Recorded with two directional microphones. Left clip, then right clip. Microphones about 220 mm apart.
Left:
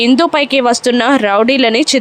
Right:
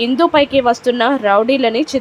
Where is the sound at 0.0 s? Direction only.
30° left (ahead or behind).